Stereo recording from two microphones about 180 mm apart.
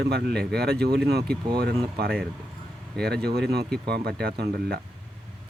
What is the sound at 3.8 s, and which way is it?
Speech, 60° right (ahead or behind).